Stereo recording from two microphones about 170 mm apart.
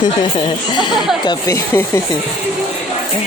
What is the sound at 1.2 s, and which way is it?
Speech, 20° left (ahead or behind).